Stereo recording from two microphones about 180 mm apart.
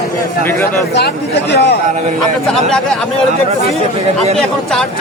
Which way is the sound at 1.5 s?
65° left (ahead or behind).